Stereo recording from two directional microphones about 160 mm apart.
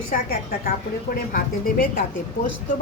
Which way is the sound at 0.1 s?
70° left (ahead or behind).